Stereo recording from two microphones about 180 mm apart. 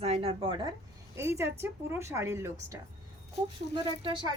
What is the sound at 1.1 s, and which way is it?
Speech, 15° right (ahead or behind).